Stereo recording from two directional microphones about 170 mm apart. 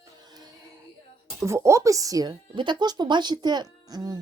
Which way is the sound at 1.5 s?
15° right (ahead or behind).